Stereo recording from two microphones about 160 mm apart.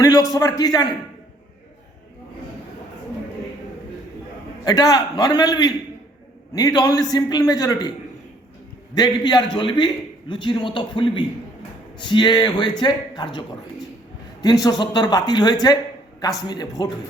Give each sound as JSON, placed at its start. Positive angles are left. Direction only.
{"t": 0.0, "sound": "a man's voice", "side_deg": 25}
{"t": 4.6, "sound": "a man's voice", "side_deg": 25}
{"t": 9.0, "sound": "a man's voice", "side_deg": 25}
{"t": 14.4, "sound": "a man's voice", "side_deg": 25}